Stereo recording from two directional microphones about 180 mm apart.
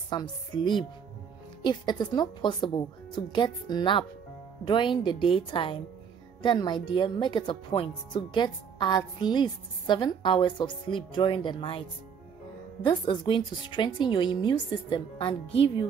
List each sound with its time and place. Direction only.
0.1 s speech: 25° left (ahead or behind)
12.8 s speech: 25° left (ahead or behind)